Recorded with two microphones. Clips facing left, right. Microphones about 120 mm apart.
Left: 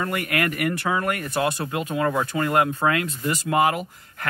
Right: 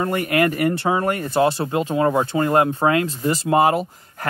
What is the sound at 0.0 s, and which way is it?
Speech, 30° right (ahead or behind).